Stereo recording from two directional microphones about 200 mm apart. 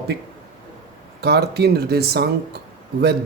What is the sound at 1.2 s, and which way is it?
Speech, 55° right (ahead or behind).